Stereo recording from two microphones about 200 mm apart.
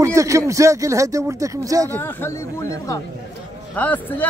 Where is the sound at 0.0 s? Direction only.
15° right (ahead or behind).